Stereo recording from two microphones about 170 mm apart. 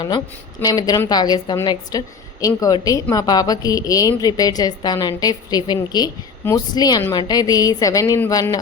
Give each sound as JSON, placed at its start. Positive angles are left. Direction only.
{"t": 0.6, "sound": "a woman's voice", "side_deg": 20}